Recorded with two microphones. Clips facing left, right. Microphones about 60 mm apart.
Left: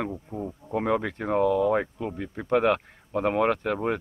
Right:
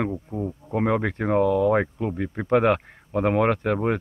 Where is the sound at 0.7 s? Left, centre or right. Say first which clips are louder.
Right 3 dB; right.